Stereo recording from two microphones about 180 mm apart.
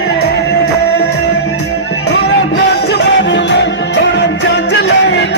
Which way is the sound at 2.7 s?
70° left (ahead or behind).